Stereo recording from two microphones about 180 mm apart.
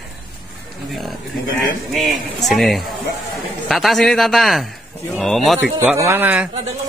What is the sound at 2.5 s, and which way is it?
Speech, centre (ahead or behind).